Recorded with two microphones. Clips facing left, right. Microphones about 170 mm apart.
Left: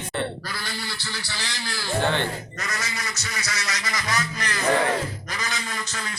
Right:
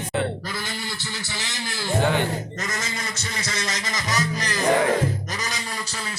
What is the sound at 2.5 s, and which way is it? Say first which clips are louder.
Speech: right 2 dB; 25° right (ahead or behind).